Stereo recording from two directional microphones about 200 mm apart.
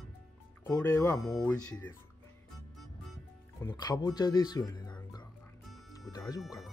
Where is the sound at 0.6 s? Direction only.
10° left (ahead or behind).